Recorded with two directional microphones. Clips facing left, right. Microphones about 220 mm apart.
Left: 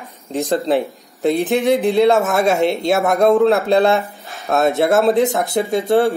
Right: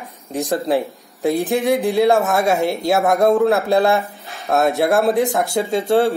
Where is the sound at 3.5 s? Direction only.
20° left (ahead or behind).